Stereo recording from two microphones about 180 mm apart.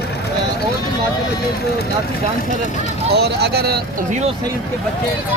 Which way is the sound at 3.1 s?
65° right (ahead or behind).